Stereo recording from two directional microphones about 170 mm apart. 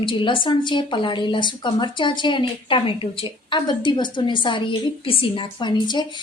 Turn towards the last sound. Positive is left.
turn(degrees=25)  # may be behind; listen again after turning